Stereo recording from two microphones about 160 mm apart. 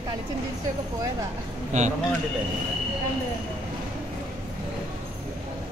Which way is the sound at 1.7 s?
45° right (ahead or behind).